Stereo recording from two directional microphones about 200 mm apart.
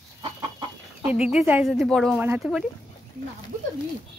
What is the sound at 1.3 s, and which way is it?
Speech, 5° right (ahead or behind).